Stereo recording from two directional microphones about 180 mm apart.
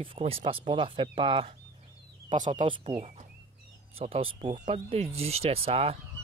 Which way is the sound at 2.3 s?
45° right (ahead or behind).